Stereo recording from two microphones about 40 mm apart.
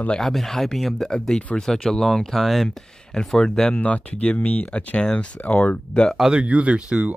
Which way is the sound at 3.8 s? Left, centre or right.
Left.